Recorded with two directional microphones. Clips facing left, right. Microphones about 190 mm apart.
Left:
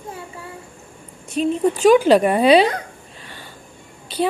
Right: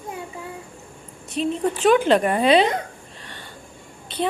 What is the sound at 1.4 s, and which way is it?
Speech, 5° left (ahead or behind).